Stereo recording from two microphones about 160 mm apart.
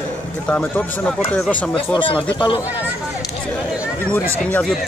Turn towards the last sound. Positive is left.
turn(degrees=10)  # may be behind; listen again after turning